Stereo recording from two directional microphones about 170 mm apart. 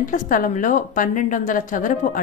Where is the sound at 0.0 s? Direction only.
55° left (ahead or behind).